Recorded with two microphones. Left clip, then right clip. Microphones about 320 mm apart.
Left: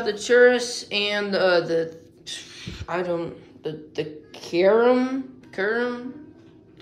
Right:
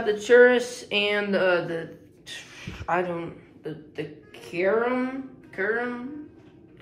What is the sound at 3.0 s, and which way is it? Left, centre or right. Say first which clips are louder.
Speech: left 4 dB; centre.